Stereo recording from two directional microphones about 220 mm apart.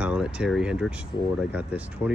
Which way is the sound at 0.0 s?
5° right (ahead or behind).